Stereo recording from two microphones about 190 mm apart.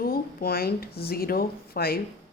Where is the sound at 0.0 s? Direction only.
50° left (ahead or behind).